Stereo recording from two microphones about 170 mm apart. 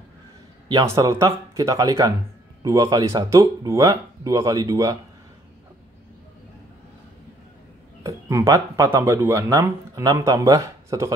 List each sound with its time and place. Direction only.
0.7 s speech: 20° right (ahead or behind)
8.0 s speech: 20° right (ahead or behind)